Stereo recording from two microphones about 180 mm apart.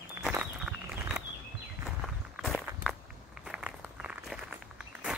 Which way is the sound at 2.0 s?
Centre (ahead or behind).